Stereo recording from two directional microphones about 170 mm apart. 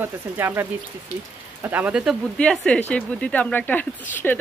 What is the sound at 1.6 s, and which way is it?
Speech, 10° right (ahead or behind).